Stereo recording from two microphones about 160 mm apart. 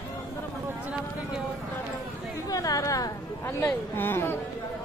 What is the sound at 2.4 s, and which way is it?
Chatter, 20° left (ahead or behind).